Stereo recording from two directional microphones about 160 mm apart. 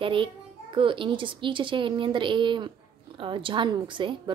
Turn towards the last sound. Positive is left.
turn(degrees=-30)  # may be behind; listen again after turning